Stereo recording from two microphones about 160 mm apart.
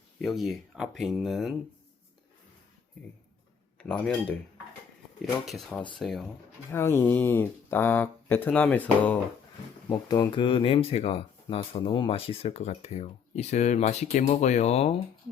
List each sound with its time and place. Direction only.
0.2 s speech: centre (ahead or behind)
3.8 s speech: 5° left (ahead or behind)
6.7 s speech: 15° left (ahead or behind)
9.9 s speech: 25° left (ahead or behind); by 14.9 s 45° left (ahead or behind)